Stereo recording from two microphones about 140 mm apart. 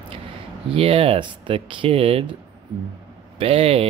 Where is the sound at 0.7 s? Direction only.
40° right (ahead or behind).